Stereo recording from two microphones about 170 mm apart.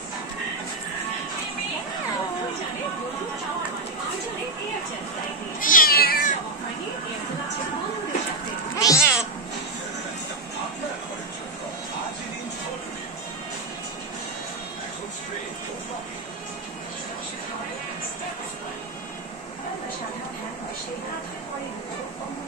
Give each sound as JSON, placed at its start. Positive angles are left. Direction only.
{"t": 5.6, "sound": "cat", "side_deg": 55}
{"t": 8.7, "sound": "cat", "side_deg": 20}